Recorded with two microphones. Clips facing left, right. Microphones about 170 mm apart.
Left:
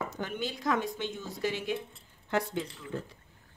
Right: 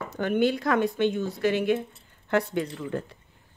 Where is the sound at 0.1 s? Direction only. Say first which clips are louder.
Right 12 dB; 60° right (ahead or behind).